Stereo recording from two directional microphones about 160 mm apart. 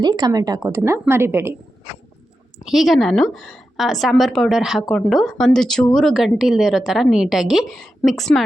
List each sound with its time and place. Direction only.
0.0 s a woman's voice: 25° right (ahead or behind)
2.6 s a woman's voice: centre (ahead or behind)